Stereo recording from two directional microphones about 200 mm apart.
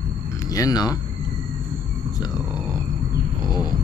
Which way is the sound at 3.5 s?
20° left (ahead or behind).